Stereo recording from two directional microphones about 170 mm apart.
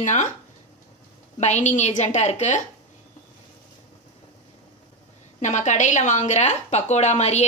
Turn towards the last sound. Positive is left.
turn(degrees=40)  # may be behind; listen again after turning